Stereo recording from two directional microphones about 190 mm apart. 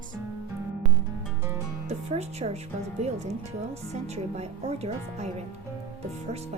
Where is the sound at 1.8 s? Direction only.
35° right (ahead or behind).